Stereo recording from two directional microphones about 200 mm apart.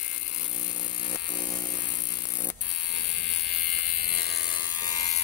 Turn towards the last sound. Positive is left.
turn(degrees=20)  # may be behind; listen again after turning